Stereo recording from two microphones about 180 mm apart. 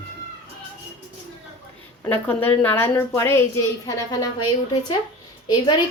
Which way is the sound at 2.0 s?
10° left (ahead or behind).